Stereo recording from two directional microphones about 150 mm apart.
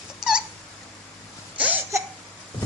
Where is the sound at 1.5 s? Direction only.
10° right (ahead or behind).